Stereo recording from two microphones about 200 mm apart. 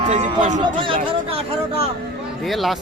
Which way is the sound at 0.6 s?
25° right (ahead or behind).